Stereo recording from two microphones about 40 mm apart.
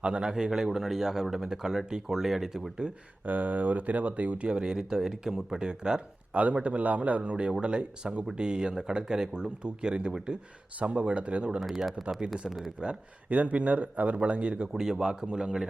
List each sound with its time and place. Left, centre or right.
0.0 s speech: right
0.3 s speech: centre
3.2 s speech: right
4.4 s speech: right
6.3 s speech: right
10.8 s speech: right
11.6 s speech: centre
13.3 s speech: right
14.7 s speech: centre